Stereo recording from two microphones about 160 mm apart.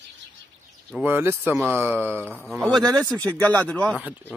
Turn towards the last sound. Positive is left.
turn(degrees=10)  # may be behind; listen again after turning